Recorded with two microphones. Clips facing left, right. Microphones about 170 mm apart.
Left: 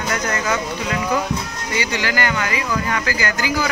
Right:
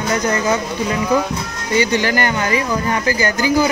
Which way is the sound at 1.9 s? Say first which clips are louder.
Right 4 dB; 20° right (ahead or behind).